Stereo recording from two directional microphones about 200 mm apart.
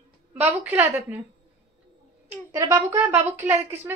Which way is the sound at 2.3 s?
15° right (ahead or behind).